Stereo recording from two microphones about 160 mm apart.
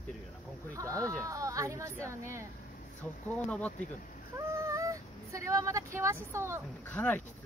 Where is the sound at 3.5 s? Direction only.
10° left (ahead or behind).